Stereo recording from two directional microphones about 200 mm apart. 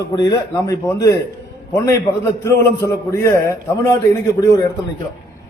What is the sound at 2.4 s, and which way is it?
A man's voice, 15° left (ahead or behind).